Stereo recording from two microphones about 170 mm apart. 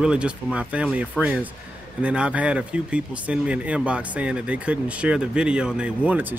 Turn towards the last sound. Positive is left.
turn(degrees=-10)  # may be behind; listen again after turning